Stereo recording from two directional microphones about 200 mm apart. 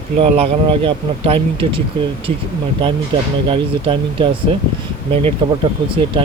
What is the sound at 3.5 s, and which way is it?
Speech, 25° right (ahead or behind).